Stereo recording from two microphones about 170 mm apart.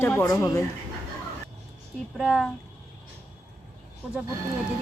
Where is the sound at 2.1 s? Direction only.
Centre (ahead or behind).